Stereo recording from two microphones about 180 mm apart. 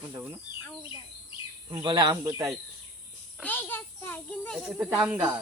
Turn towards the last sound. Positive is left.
turn(degrees=-10)  # may be behind; listen again after turning